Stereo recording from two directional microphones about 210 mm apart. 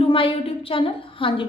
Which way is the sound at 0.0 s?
25° left (ahead or behind).